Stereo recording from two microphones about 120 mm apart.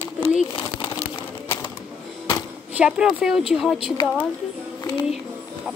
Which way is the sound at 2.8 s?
5° right (ahead or behind).